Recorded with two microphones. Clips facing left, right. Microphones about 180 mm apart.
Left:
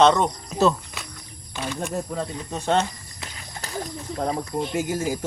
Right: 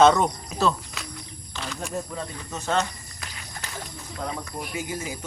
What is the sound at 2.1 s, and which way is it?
Speech, 30° left (ahead or behind).